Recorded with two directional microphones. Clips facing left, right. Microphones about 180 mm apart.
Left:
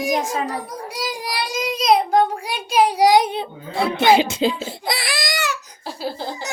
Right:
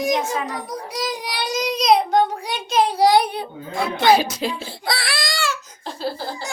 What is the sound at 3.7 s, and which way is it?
A child's voice, 30° left (ahead or behind).